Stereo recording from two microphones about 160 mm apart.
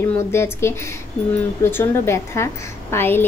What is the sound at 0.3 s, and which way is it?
A woman's voice, 15° left (ahead or behind).